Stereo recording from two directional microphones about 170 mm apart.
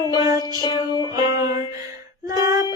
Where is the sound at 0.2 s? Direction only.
20° right (ahead or behind).